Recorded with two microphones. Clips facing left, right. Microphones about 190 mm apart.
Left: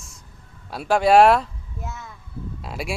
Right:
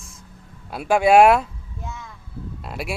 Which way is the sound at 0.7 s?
5° right (ahead or behind).